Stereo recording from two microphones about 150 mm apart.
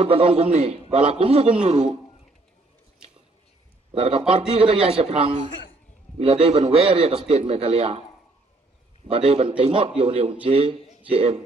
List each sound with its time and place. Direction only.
0.0 s a man's voice: 40° right (ahead or behind)
3.9 s a man's voice: 40° right (ahead or behind)
9.0 s a man's voice: 40° right (ahead or behind)